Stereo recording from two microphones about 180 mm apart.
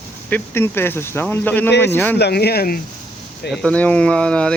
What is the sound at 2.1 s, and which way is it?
Speech, 65° left (ahead or behind).